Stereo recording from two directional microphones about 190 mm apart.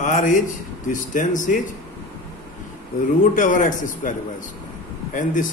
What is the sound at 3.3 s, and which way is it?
A man's voice, 45° left (ahead or behind).